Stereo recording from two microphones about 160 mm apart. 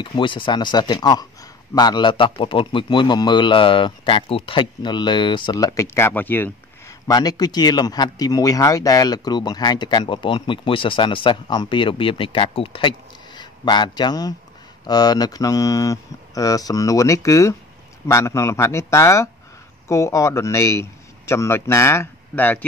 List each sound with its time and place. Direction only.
0.0 s speech: 30° left (ahead or behind); by 22.7 s 10° left (ahead or behind)